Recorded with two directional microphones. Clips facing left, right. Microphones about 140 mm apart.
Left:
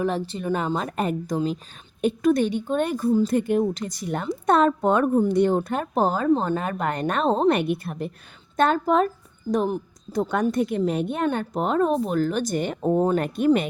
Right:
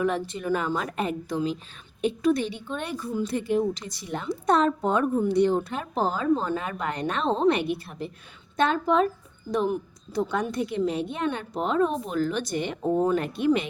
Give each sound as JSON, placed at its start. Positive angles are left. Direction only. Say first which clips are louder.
{"t": 0.0, "sound": "speech", "louder": "left 1 dB", "side_deg": 30}
{"t": 0.9, "sound": "a woman's voice", "louder": "left 3 dB", "side_deg": 45}